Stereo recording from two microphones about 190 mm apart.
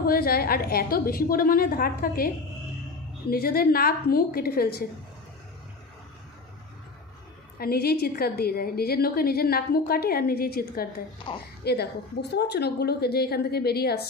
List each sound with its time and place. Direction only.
0.0 s a woman's voice: 50° left (ahead or behind)
7.6 s a woman's voice: 55° left (ahead or behind)
11.3 s a woman's voice: 25° left (ahead or behind)
11.6 s a woman's voice: 55° left (ahead or behind)